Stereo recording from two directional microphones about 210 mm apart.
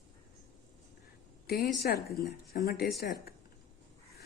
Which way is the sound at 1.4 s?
50° left (ahead or behind).